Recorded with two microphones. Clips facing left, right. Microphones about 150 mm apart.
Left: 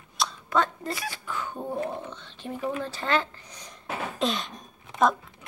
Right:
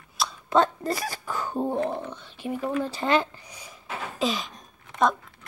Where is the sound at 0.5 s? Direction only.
35° right (ahead or behind).